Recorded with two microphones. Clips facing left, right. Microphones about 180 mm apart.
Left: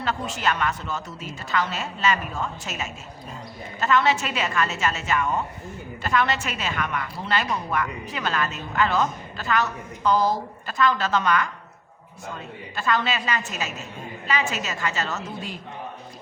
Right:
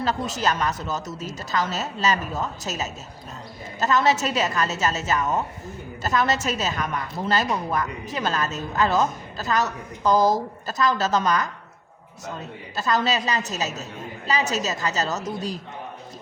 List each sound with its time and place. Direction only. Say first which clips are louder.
0.0 s a woman's voice: right 2 dB; 40° right (ahead or behind)
12.7 s a woman's voice: right 2 dB; 40° right (ahead or behind)